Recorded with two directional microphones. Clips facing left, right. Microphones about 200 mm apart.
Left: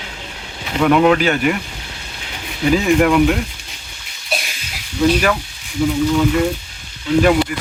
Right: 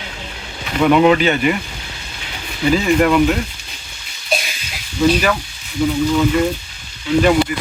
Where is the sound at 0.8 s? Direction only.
Centre (ahead or behind).